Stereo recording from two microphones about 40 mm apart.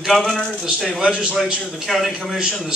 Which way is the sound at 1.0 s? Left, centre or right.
Right.